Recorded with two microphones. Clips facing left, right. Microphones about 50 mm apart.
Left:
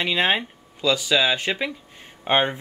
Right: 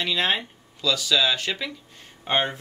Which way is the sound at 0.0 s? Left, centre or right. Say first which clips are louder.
Left 3 dB; left.